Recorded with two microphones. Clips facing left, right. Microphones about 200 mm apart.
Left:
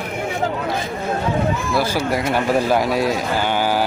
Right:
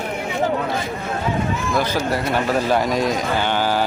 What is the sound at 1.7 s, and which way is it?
A man's voice, 10° left (ahead or behind).